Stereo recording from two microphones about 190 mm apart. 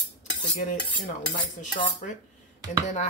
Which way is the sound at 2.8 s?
40° left (ahead or behind).